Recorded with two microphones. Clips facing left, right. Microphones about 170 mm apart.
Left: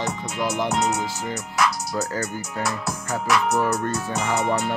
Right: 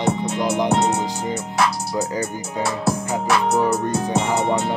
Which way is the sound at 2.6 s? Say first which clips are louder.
Right 8 dB; 30° right (ahead or behind).